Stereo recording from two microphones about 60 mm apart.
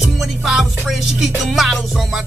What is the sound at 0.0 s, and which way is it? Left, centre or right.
Music, centre.